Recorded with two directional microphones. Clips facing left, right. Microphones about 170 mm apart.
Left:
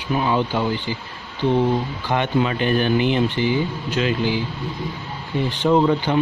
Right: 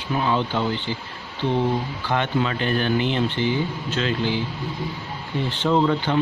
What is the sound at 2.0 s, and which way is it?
Speech, 15° left (ahead or behind).